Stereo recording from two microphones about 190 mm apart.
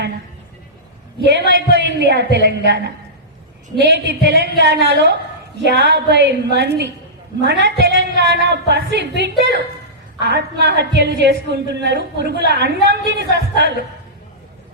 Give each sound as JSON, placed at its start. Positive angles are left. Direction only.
{"t": 1.5, "sound": "a woman's voice", "side_deg": -65}